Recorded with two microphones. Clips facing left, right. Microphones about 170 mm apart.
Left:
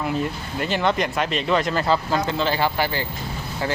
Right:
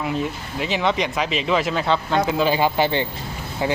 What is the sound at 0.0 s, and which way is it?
Speech, centre (ahead or behind).